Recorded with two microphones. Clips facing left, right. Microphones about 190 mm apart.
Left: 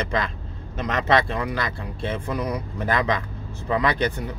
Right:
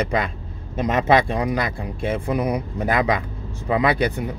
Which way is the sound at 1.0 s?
15° right (ahead or behind).